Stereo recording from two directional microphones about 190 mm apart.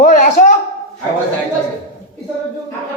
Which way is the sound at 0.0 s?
40° left (ahead or behind).